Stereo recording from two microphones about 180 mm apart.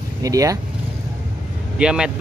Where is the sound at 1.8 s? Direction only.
5° right (ahead or behind).